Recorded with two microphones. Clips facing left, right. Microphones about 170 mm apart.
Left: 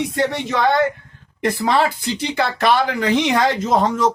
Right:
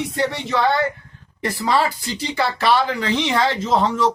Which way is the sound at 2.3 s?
55° left (ahead or behind).